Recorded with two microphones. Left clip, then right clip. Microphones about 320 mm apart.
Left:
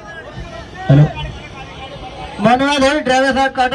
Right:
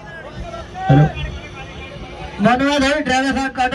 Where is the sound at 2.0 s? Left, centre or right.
Left.